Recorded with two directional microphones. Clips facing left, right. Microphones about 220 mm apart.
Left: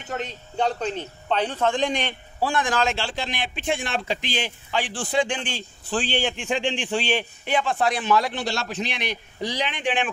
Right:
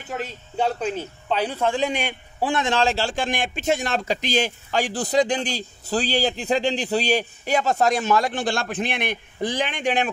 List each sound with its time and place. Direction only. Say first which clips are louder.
0.1 s speech: even; 5° right (ahead or behind)
2.4 s a man's voice: right 2 dB; 20° right (ahead or behind); by 10.0 s 45° right (ahead or behind)